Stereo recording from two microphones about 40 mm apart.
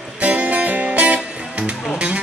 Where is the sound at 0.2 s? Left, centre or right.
Right.